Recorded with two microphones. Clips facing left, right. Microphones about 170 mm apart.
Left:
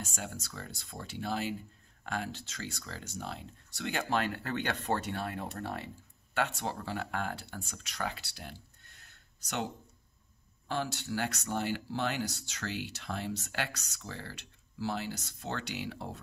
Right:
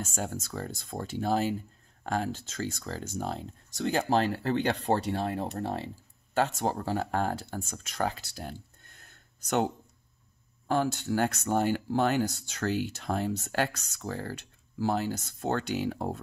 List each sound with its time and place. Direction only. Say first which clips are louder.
0.0 s speech: right 7 dB; 45° right (ahead or behind)
10.7 s speech: right 7 dB; 50° right (ahead or behind)